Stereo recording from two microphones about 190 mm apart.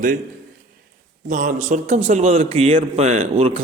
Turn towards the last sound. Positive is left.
turn(degrees=-35)  # may be behind; listen again after turning